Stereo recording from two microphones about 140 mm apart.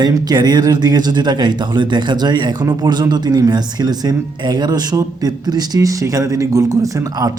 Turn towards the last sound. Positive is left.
turn(degrees=-25)  # may be behind; listen again after turning